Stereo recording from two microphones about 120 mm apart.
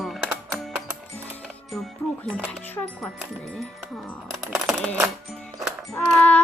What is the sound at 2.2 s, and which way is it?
Speech, 15° left (ahead or behind).